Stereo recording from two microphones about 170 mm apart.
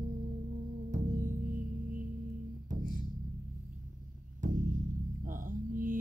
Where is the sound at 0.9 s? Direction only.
50° right (ahead or behind).